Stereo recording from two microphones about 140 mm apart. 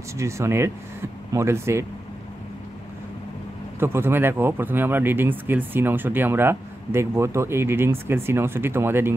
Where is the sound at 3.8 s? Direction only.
15° right (ahead or behind).